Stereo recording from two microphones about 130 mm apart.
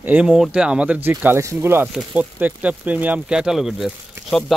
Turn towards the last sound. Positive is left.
turn(degrees=0)  # may be behind; listen again after turning